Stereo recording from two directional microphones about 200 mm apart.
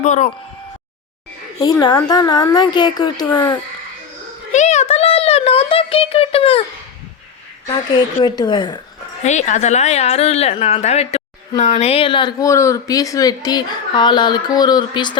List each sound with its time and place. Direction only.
0.0 s speech: 35° left (ahead or behind)
1.5 s speech: 20° left (ahead or behind)
4.5 s a sound: 35° left (ahead or behind)
7.7 s speech: 20° left (ahead or behind)
9.2 s speech: 35° left (ahead or behind)